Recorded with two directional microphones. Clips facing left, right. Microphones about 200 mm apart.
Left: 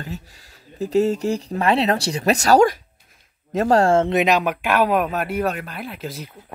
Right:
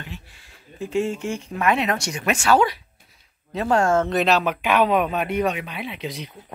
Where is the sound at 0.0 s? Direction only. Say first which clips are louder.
Left 6 dB; 40° left (ahead or behind).